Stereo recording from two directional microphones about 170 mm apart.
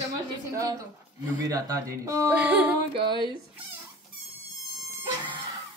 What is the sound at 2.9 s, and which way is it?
Speech, 30° right (ahead or behind).